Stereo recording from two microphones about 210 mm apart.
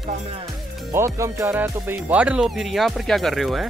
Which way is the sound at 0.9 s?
15° right (ahead or behind).